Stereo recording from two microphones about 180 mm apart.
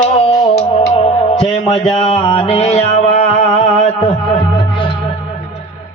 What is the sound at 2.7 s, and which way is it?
Music, 35° left (ahead or behind).